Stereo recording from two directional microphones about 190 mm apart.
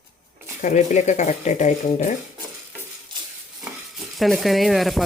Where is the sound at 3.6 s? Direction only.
Centre (ahead or behind).